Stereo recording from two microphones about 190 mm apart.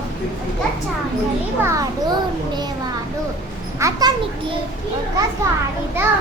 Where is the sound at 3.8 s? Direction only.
20° right (ahead or behind).